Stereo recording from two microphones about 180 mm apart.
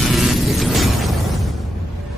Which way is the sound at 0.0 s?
Centre (ahead or behind).